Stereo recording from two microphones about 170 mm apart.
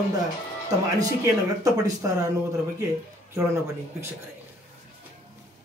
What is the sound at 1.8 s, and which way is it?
Speech, 20° right (ahead or behind).